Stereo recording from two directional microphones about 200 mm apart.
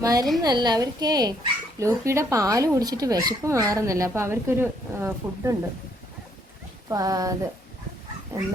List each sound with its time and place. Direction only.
0.0 s a woman's voice: 20° right (ahead or behind)
6.8 s speech: 15° right (ahead or behind)